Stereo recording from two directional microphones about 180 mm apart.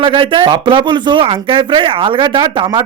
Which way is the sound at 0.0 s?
30° right (ahead or behind).